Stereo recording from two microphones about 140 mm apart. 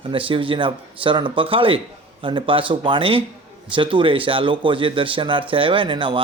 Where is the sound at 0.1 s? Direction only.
40° right (ahead or behind).